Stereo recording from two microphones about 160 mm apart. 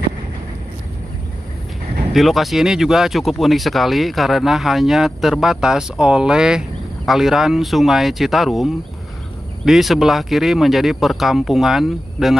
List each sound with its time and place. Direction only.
2.1 s speech: centre (ahead or behind)